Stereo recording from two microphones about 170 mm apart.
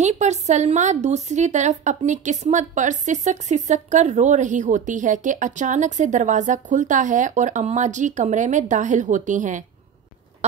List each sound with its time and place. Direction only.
0.0 s speech: 45° right (ahead or behind)